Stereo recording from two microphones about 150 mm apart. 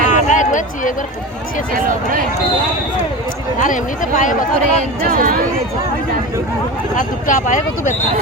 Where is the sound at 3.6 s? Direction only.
60° left (ahead or behind).